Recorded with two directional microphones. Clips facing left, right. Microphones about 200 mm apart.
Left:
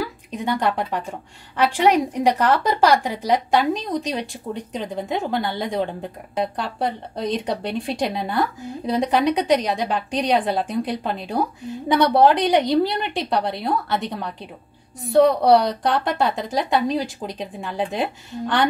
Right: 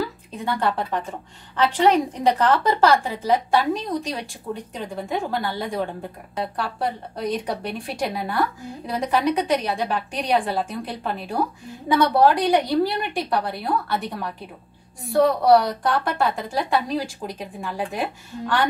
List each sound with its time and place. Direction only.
0.0 s a woman's voice: 15° left (ahead or behind)